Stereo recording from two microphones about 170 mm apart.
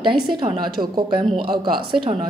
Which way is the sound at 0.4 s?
30° right (ahead or behind).